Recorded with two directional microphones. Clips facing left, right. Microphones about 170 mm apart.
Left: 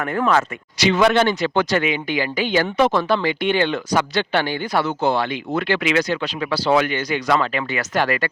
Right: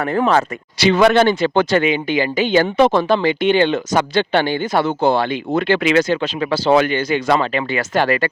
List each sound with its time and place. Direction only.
0.0 s speech: 35° right (ahead or behind)